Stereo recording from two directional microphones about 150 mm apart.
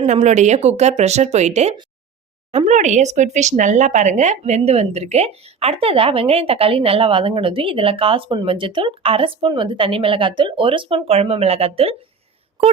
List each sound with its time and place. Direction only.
0.0 s speech: 50° right (ahead or behind)